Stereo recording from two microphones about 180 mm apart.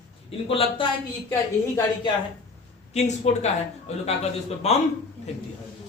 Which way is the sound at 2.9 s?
40° left (ahead or behind).